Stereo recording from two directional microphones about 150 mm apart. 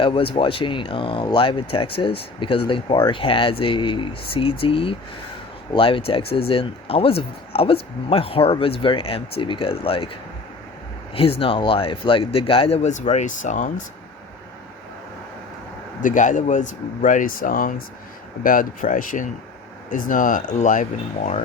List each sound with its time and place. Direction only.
0.0 s speech: 35° left (ahead or behind)
11.1 s speech: 40° left (ahead or behind); by 13.8 s 55° left (ahead or behind)
16.0 s speech: 60° left (ahead or behind)